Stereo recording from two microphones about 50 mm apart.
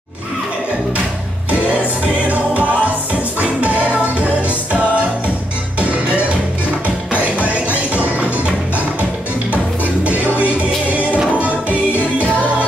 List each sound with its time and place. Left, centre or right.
2.2 s music: right
7.9 s music: right
10.0 s music: right